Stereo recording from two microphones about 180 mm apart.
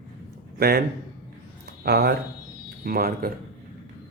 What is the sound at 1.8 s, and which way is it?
Speech, 60° right (ahead or behind).